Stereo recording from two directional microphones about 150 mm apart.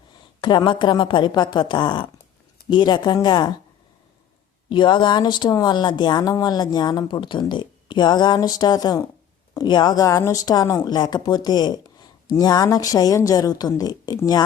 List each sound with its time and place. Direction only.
0.4 s a woman's voice: 30° left (ahead or behind)
4.7 s speech: 30° left (ahead or behind)